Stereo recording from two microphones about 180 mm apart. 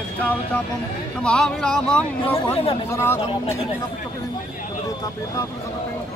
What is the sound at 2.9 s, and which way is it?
Speech, 15° left (ahead or behind).